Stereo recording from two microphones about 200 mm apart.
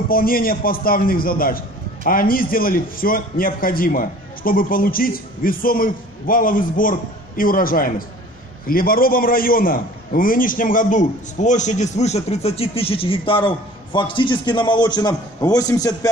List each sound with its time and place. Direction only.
0.1 s a man's voice: 45° left (ahead or behind); by 16.1 s 20° left (ahead or behind)